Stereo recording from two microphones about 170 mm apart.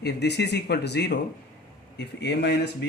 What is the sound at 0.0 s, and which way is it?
Speech, 80° left.